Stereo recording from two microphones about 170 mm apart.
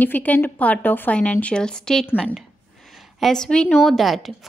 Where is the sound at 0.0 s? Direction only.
10° left (ahead or behind).